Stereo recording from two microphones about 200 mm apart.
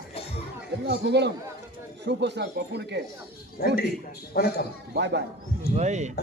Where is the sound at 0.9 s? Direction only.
60° right (ahead or behind).